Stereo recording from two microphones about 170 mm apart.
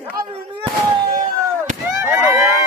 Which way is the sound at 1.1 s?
45° right (ahead or behind).